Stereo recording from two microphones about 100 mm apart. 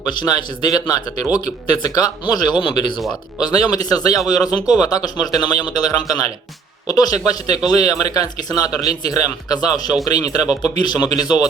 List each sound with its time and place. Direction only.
0.0 s speech: 45° left (ahead or behind)
2.6 s speech: 55° left (ahead or behind)
3.4 s speech: 40° left (ahead or behind)